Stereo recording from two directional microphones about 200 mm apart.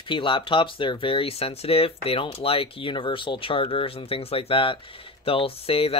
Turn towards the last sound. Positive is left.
turn(degrees=30)  # may be behind; listen again after turning